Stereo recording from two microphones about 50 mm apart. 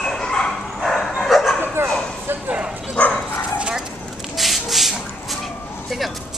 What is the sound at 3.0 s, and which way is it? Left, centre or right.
Dog, left.